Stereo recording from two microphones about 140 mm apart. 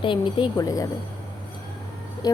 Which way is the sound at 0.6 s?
25° left (ahead or behind).